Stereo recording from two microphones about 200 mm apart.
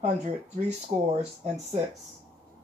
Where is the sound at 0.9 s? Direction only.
35° right (ahead or behind).